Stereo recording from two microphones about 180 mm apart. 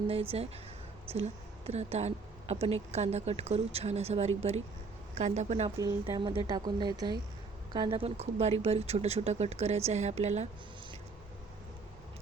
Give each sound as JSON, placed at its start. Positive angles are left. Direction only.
{"t": 0.1, "sound": "speech", "side_deg": -30}
{"t": 5.7, "sound": "speech", "side_deg": -20}